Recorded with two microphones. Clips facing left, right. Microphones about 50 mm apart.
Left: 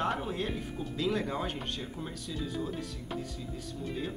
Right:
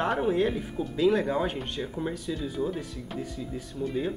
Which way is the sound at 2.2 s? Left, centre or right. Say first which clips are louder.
Right 6 dB; centre.